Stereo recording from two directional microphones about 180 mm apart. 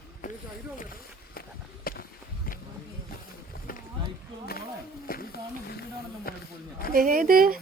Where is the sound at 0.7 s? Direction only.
55° left (ahead or behind).